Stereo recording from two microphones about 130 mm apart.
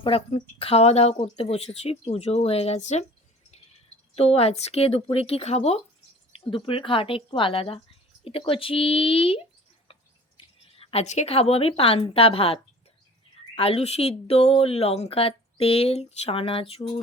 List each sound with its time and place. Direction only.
0.0 s a woman's voice: 45° left (ahead or behind)
4.1 s a woman's voice: 50° left (ahead or behind)
13.6 s a woman's voice: 50° left (ahead or behind)